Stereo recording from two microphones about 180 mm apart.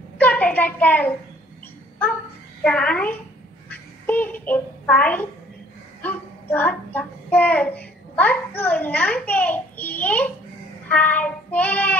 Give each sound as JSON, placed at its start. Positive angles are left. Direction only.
{"t": 0.2, "sound": "child singing", "side_deg": 10}
{"t": 2.6, "sound": "child singing", "side_deg": 5}
{"t": 3.7, "sound": "quack", "side_deg": 10}
{"t": 6.0, "sound": "a child's voice", "side_deg": 10}
{"t": 10.9, "sound": "child singing", "side_deg": 10}